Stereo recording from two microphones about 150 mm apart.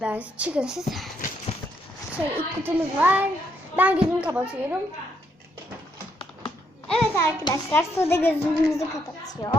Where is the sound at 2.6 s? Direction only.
10° right (ahead or behind).